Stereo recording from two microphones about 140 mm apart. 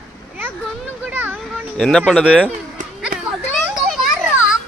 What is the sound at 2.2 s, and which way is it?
Speech, 10° right (ahead or behind).